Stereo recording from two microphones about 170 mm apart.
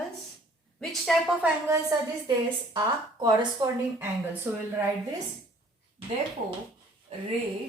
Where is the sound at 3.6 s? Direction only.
25° right (ahead or behind).